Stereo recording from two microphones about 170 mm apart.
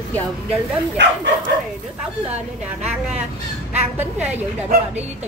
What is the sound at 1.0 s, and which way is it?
Speech, 90° right.